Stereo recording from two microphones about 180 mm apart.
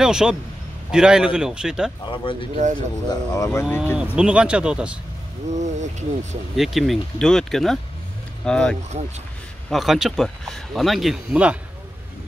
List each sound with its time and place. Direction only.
0.0 s speech: 5° right (ahead or behind)
2.5 s speech: 40° right (ahead or behind)
3.1 s speech: 15° left (ahead or behind)
3.8 s speech: 5° right (ahead or behind)
5.5 s speech: 40° right (ahead or behind)
6.5 s speech: centre (ahead or behind)